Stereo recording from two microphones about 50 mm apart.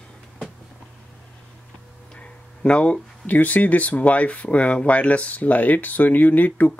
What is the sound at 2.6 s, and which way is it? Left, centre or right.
Speech, left.